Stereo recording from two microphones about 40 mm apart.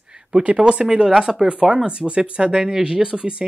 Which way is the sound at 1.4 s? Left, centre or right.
Right.